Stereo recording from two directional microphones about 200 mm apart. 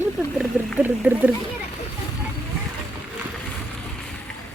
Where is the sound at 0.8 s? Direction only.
10° right (ahead or behind).